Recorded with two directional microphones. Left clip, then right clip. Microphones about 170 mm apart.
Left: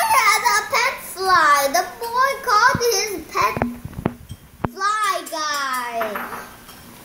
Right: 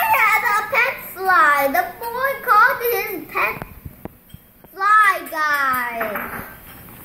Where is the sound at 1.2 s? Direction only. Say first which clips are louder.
Even; 10° left (ahead or behind).